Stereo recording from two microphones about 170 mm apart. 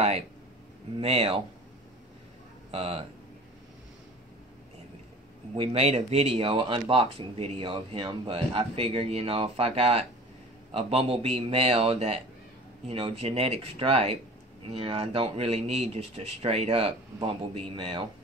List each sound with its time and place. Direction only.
0.9 s speech: 30° right (ahead or behind)
2.7 s speech: 35° right (ahead or behind)
5.5 s speech: 30° right (ahead or behind)